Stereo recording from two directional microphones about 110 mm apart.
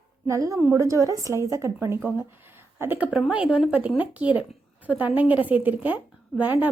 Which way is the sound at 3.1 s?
5° right (ahead or behind).